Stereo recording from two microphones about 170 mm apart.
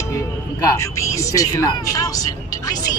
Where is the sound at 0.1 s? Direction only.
20° left (ahead or behind).